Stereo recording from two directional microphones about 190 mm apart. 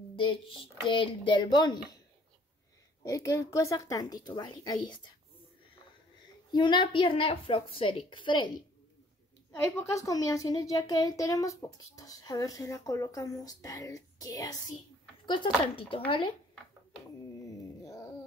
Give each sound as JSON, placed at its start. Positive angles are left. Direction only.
{"t": 0.1, "sound": "a sound", "side_deg": 25}
{"t": 0.8, "sound": "a woman's voice", "side_deg": 25}
{"t": 3.0, "sound": "a woman's voice", "side_deg": 15}
{"t": 6.5, "sound": "a woman's voice", "side_deg": 25}
{"t": 9.7, "sound": "a woman's voice", "side_deg": 15}
{"t": 17.5, "sound": "a sound", "side_deg": 15}